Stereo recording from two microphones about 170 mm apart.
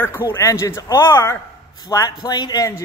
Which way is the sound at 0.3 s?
15° left (ahead or behind).